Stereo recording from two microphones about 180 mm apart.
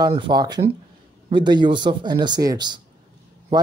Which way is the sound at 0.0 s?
25° right (ahead or behind).